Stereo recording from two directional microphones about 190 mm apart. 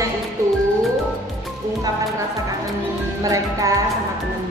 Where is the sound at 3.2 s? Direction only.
15° right (ahead or behind).